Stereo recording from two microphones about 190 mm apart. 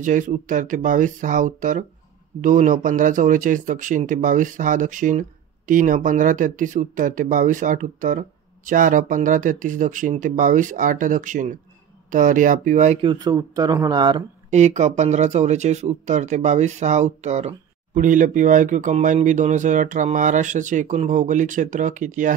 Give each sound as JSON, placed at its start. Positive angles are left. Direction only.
{"t": 0.0, "sound": "speech", "side_deg": -40}
{"t": 13.0, "sound": "speech", "side_deg": -20}
{"t": 14.5, "sound": "speech", "side_deg": -40}